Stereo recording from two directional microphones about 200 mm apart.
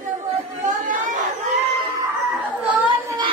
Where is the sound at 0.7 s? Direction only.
40° right (ahead or behind).